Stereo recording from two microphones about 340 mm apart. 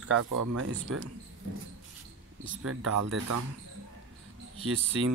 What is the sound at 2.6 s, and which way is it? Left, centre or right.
Speech, right.